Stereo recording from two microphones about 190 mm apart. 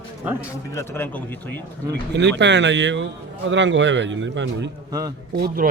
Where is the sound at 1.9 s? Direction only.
65° right (ahead or behind).